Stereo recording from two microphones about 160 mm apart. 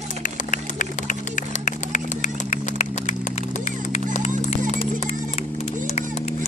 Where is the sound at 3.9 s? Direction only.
45° left (ahead or behind).